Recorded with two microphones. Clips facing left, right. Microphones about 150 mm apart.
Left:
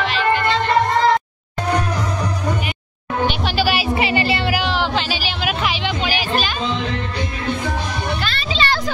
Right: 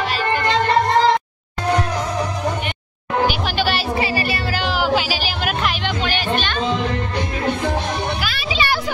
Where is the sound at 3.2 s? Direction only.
5° left (ahead or behind).